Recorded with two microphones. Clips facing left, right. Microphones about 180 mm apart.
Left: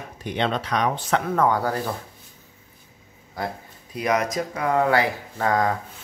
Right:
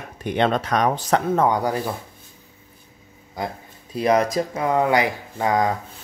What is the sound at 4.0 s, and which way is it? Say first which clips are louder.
Speech: right 4 dB; 30° right (ahead or behind).